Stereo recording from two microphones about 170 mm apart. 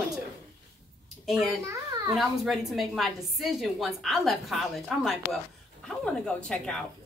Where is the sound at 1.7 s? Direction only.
20° right (ahead or behind).